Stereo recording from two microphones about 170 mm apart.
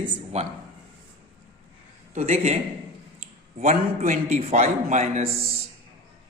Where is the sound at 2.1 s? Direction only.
40° right (ahead or behind).